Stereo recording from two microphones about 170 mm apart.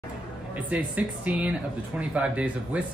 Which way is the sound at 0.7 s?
10° right (ahead or behind).